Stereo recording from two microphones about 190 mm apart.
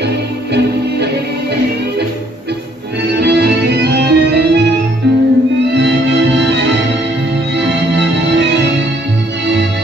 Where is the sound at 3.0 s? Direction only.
60° right (ahead or behind).